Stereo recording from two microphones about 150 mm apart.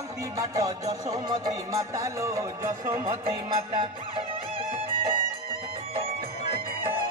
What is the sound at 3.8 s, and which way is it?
Music, 35° right (ahead or behind).